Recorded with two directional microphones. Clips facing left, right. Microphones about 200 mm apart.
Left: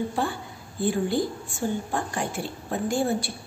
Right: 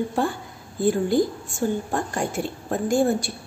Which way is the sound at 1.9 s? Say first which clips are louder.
Right 3 dB; 45° right (ahead or behind).